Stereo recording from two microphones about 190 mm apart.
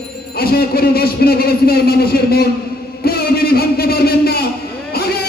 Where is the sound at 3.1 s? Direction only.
55° left (ahead or behind).